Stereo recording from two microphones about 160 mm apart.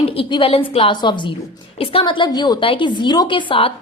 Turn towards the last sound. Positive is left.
turn(degrees=35)  # may be behind; listen again after turning